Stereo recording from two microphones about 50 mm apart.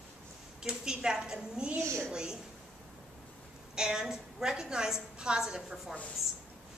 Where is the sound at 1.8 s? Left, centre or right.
Right.